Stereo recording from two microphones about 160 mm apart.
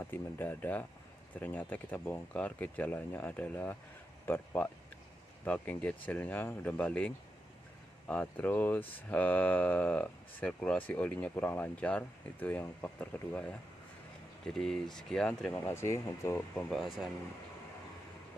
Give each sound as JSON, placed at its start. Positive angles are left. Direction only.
{"t": 0.0, "sound": "speech", "side_deg": 15}
{"t": 8.1, "sound": "speech", "side_deg": 10}
{"t": 15.6, "sound": "speech", "side_deg": 15}
{"t": 16.7, "sound": "speech", "side_deg": 0}